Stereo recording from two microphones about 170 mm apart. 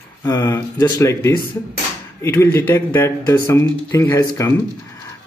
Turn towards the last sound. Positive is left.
turn(degrees=15)  # may be behind; listen again after turning